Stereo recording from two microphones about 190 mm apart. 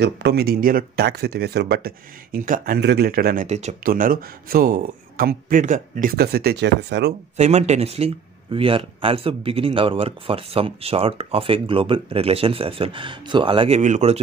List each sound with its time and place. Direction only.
0.0 s speech: 60° right (ahead or behind)
3.4 s speech: 35° right (ahead or behind)
3.9 s speech: 50° right (ahead or behind)
7.3 s speech: 35° right (ahead or behind)